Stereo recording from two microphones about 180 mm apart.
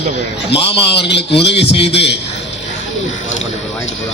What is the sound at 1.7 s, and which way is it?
Speech, 35° left (ahead or behind).